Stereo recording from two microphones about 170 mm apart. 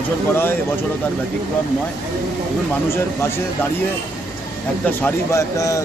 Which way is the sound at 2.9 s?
15° left (ahead or behind).